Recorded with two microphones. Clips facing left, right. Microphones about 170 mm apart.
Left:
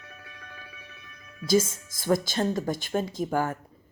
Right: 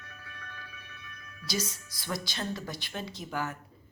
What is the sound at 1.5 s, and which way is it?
Speech, 50° left (ahead or behind).